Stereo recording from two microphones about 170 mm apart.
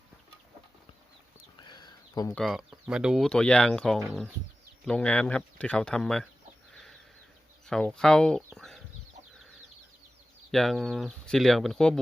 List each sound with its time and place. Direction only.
1.5 s a sound: 25° left (ahead or behind)
2.3 s speech: centre (ahead or behind)
7.7 s speech: 5° left (ahead or behind)
8.5 s chicken: centre (ahead or behind)
10.5 s speech: centre (ahead or behind)